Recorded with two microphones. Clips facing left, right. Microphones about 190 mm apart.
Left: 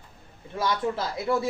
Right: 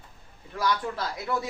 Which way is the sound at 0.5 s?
25° left (ahead or behind).